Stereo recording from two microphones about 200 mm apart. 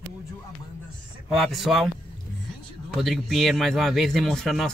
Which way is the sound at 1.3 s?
Centre (ahead or behind).